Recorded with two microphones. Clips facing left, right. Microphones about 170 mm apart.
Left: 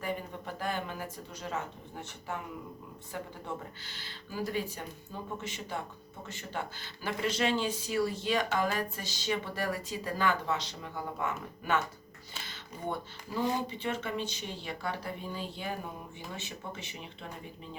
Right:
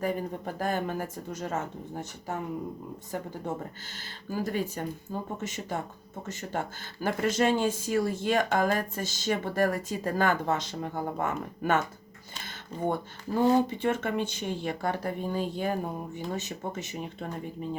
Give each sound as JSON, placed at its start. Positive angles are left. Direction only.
{"t": 0.0, "sound": "speech", "side_deg": -40}
{"t": 3.9, "sound": "speech", "side_deg": -45}